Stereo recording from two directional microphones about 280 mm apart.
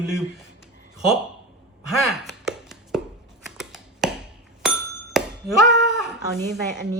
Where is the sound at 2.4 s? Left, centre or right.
Centre.